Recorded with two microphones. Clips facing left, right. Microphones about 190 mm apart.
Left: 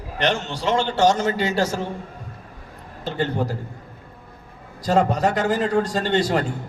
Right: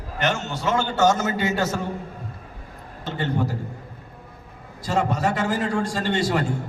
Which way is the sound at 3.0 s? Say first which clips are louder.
Left 2 dB; 35° left (ahead or behind).